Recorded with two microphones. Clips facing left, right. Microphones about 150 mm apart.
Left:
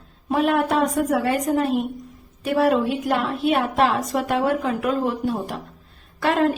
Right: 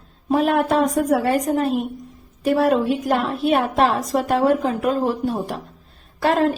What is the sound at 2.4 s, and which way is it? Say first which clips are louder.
A woman's voice: right 2 dB; 40° right (ahead or behind).